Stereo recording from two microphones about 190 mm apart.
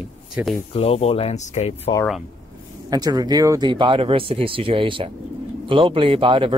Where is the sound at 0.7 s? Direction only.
30° left (ahead or behind).